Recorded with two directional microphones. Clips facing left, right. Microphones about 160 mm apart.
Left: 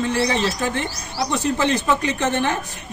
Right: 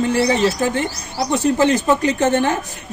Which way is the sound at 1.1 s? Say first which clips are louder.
Right 4 dB; 45° right (ahead or behind).